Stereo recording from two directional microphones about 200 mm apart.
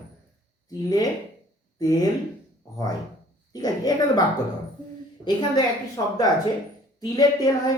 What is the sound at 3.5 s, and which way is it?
Speech, 20° left (ahead or behind).